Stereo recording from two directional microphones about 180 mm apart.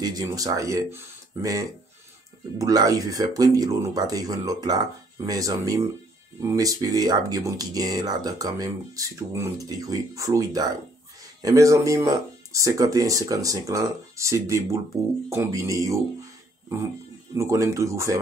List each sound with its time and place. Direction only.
0.0 s speech: 20° right (ahead or behind)
17.3 s speech: 15° right (ahead or behind)